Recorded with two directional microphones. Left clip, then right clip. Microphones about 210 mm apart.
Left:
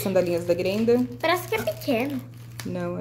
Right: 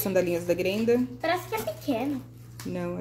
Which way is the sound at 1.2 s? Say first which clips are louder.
Left 4 dB; 50° left (ahead or behind).